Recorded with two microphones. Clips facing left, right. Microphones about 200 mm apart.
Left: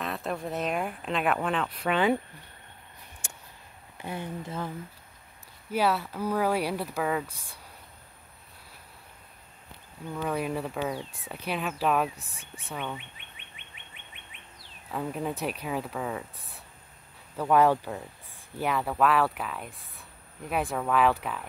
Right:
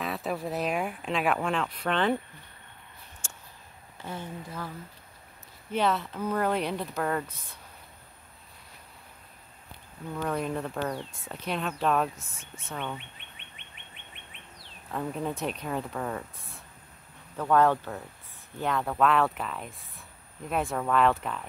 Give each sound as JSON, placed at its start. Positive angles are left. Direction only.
{"t": 0.0, "sound": "speech", "side_deg": 0}
{"t": 3.2, "sound": "a sound", "side_deg": 15}
{"t": 4.0, "sound": "speech", "side_deg": 15}
{"t": 5.7, "sound": "speech", "side_deg": 10}
{"t": 10.1, "sound": "speech", "side_deg": 5}
{"t": 12.2, "sound": "speech", "side_deg": 35}
{"t": 12.7, "sound": "speech", "side_deg": 5}
{"t": 14.9, "sound": "speech", "side_deg": 5}